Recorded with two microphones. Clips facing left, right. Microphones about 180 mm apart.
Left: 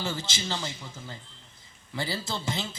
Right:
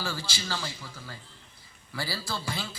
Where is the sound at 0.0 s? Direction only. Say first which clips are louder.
Left 2 dB; 20° left (ahead or behind).